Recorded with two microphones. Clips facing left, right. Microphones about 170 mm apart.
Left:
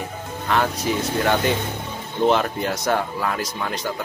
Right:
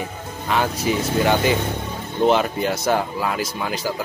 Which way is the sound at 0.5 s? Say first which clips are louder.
Right 1 dB; centre (ahead or behind).